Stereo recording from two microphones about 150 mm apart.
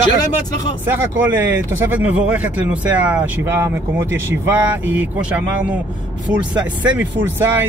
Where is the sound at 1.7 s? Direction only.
10° right (ahead or behind).